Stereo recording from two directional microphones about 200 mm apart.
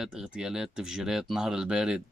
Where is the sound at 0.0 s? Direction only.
5° right (ahead or behind).